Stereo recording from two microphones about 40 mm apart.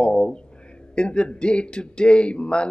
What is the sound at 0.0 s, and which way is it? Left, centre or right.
Speech, left.